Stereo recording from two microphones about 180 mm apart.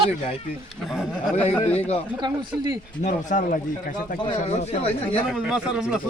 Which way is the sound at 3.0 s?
45° left (ahead or behind).